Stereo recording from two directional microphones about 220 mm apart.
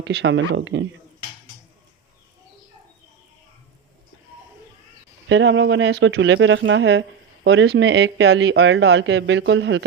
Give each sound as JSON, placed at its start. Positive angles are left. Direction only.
{"t": 0.0, "sound": "speech", "side_deg": -50}
{"t": 5.3, "sound": "speech", "side_deg": -60}